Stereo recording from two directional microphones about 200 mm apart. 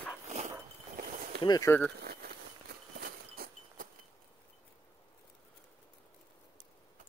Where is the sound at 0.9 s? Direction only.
40° right (ahead or behind).